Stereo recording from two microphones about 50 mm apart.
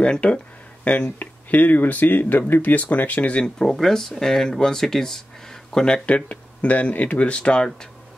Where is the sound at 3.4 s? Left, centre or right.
Centre.